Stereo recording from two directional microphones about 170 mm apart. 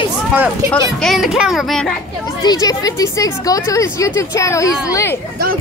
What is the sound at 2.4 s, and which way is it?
Speech, 20° left (ahead or behind).